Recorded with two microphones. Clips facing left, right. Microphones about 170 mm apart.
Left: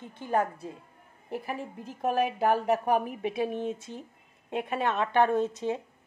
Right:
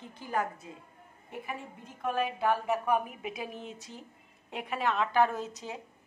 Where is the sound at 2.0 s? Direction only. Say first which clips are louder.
Left 4 dB; 40° left (ahead or behind).